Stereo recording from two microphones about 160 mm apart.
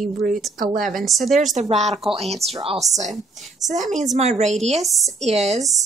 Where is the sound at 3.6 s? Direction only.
50° right (ahead or behind).